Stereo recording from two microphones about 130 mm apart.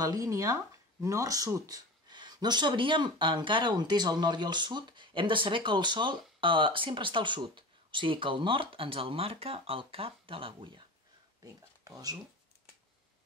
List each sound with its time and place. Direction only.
0.0 s speech: 25° right (ahead or behind); by 10.7 s 45° right (ahead or behind)
11.4 s speech: 25° right (ahead or behind)